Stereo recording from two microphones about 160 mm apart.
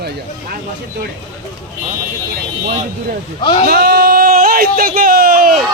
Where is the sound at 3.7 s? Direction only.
90° right; by 5.5 s 70° right (ahead or behind).